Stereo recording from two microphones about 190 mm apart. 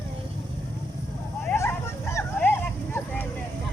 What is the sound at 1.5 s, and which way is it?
Vehicle, 15° left (ahead or behind).